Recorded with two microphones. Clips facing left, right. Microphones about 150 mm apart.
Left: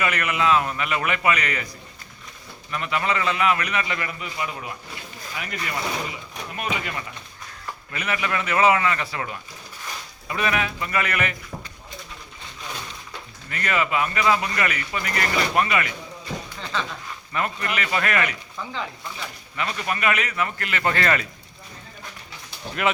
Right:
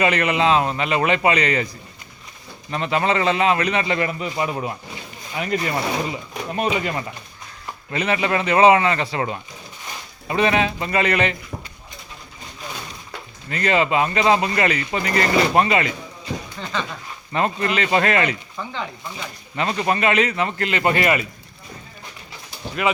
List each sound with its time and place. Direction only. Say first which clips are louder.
0.0 s a man's voice: right 5 dB; 25° right (ahead or behind)
13.5 s a man's voice: right 5 dB; 25° right (ahead or behind)
17.3 s a man's voice: right 6 dB; 25° right (ahead or behind)
19.5 s a man's voice: right 6 dB; 30° right (ahead or behind); by 21.2 s 15° right (ahead or behind)
22.8 s speech: right 2 dB; centre (ahead or behind)